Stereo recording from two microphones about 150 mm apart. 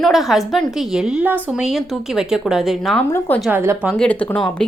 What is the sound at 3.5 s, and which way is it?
Speech, 15° right (ahead or behind).